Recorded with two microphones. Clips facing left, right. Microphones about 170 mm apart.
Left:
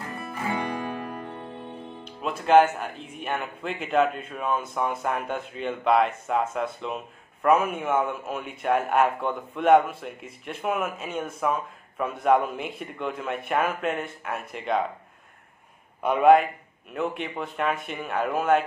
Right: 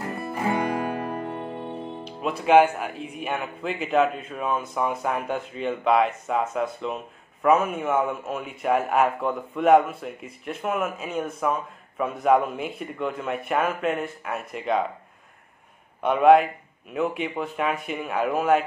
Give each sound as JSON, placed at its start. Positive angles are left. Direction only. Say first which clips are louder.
{"t": 0.4, "sound": "music", "louder": "right 4 dB", "side_deg": -40}
{"t": 1.7, "sound": "music", "louder": "right 5 dB", "side_deg": -30}
{"t": 2.2, "sound": "a man's voice", "louder": "right 1 dB", "side_deg": 0}
{"t": 16.0, "sound": "a man's voice", "louder": "right 1 dB", "side_deg": 0}